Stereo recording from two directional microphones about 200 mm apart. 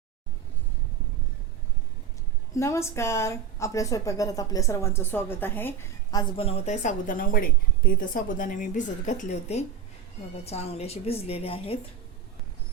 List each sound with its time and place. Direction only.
2.6 s a woman's voice: 15° left (ahead or behind)